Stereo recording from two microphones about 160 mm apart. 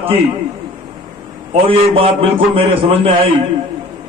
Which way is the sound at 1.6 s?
35° right (ahead or behind).